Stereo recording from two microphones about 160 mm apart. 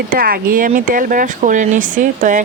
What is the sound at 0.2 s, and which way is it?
Speech, 65° right (ahead or behind).